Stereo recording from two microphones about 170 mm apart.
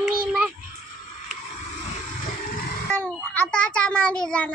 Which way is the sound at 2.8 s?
5° left (ahead or behind).